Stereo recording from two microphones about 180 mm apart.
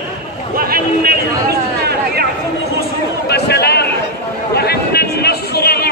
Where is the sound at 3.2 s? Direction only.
65° left (ahead or behind).